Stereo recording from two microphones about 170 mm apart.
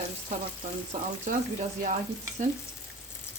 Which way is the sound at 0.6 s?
45° right (ahead or behind).